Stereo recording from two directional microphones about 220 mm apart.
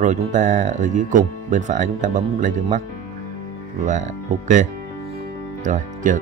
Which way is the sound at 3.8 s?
35° right (ahead or behind).